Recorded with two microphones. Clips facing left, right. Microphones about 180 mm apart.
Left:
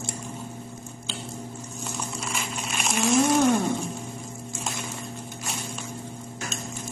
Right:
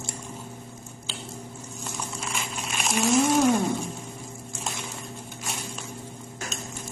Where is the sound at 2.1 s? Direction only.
Centre (ahead or behind).